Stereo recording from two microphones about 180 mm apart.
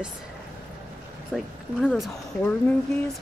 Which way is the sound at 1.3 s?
Centre (ahead or behind).